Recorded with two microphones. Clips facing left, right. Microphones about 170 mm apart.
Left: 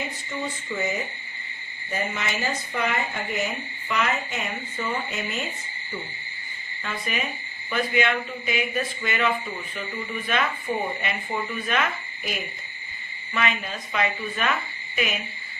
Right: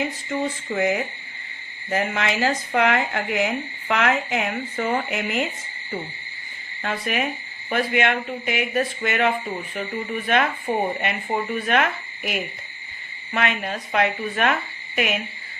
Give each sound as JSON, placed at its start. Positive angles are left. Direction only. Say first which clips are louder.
{"t": 0.7, "sound": "speech", "louder": "right 6 dB", "side_deg": -55}
{"t": 1.9, "sound": "speech", "louder": "right 6 dB", "side_deg": -90}
{"t": 6.8, "sound": "speech", "louder": "right 5 dB", "side_deg": -70}